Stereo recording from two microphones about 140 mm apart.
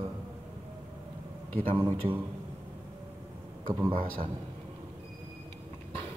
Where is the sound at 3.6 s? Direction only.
35° right (ahead or behind).